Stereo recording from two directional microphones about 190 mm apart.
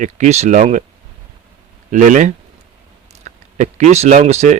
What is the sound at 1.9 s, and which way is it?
Speech, 40° right (ahead or behind).